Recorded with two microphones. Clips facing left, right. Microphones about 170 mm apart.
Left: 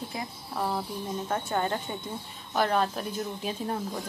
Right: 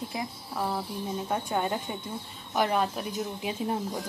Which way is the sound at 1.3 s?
10° right (ahead or behind).